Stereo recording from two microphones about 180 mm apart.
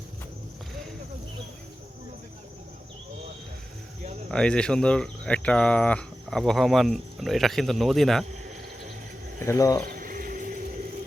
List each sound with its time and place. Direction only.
4.3 s speech: 5° left (ahead or behind)
9.4 s speech: 15° left (ahead or behind)
9.8 s a sound: 50° right (ahead or behind)